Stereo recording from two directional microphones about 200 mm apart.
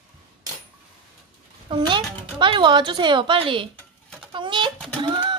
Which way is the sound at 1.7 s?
25° right (ahead or behind).